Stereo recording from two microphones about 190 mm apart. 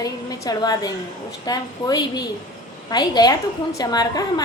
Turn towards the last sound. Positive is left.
turn(degrees=20)  # may be behind; listen again after turning